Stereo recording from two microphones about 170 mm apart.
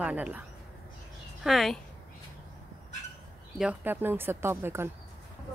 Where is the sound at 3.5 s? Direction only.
10° right (ahead or behind).